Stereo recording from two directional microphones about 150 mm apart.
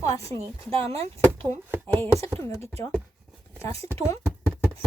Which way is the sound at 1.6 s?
15° right (ahead or behind).